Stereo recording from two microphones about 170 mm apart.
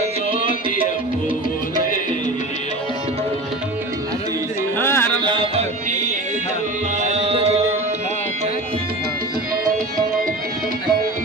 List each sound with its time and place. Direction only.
0.0 s music: 35° right (ahead or behind)
4.8 s music: 15° left (ahead or behind)
5.2 s music: 30° right (ahead or behind)
7.1 s music: 35° right (ahead or behind)